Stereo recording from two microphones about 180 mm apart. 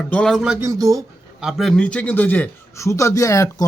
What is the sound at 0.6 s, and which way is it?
Speech, 20° right (ahead or behind).